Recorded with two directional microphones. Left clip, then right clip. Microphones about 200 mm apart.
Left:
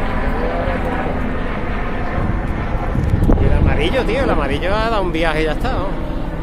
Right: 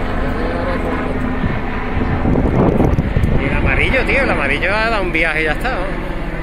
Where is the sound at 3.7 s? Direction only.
20° left (ahead or behind).